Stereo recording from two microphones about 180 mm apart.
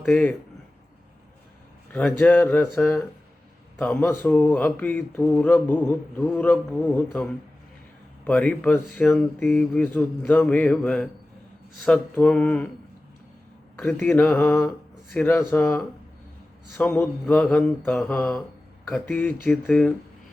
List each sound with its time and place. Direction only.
0.1 s speech: 10° left (ahead or behind)
1.9 s speech: 5° left (ahead or behind)
8.3 s speech: 5° left (ahead or behind)
13.7 s speech: 5° left (ahead or behind)
16.7 s mantra: 10° left (ahead or behind)
18.9 s speech: 5° left (ahead or behind)